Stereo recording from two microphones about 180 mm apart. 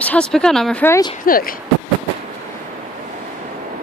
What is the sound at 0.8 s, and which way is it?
Speech, 15° left (ahead or behind).